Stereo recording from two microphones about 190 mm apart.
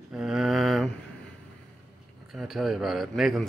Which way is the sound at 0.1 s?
5° right (ahead or behind).